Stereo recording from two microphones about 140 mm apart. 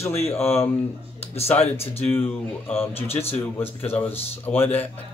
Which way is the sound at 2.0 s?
15° left (ahead or behind).